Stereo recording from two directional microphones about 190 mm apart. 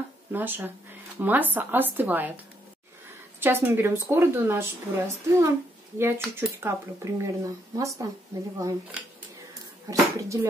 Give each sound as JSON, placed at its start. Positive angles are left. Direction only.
{"t": 0.3, "sound": "a woman's voice", "side_deg": -10}
{"t": 3.3, "sound": "a woman's voice", "side_deg": -10}
{"t": 9.8, "sound": "a woman's voice", "side_deg": -15}